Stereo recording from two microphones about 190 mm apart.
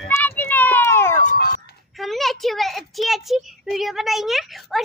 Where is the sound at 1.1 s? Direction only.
45° left (ahead or behind).